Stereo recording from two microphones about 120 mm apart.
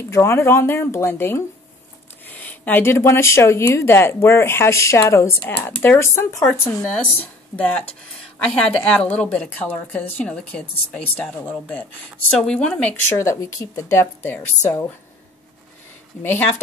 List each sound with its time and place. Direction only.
0.1 s speech: 20° left (ahead or behind)
13.2 s speech: 25° left (ahead or behind)
16.2 s speech: 15° left (ahead or behind)